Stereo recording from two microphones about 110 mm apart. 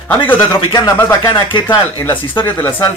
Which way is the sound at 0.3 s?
20° left (ahead or behind).